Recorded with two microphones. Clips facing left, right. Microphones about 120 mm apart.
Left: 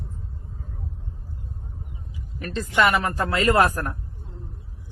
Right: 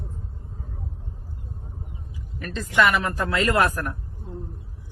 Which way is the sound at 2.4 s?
35° left (ahead or behind).